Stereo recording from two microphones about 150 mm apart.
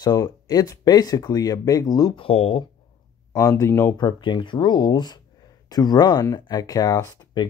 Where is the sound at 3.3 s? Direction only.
25° left (ahead or behind).